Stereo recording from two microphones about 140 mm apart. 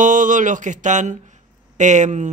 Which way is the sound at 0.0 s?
70° right (ahead or behind).